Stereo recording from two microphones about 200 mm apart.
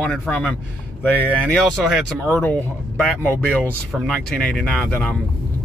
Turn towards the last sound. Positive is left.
turn(degrees=5)  # may be behind; listen again after turning